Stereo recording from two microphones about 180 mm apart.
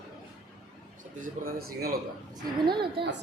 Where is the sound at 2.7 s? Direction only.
25° right (ahead or behind).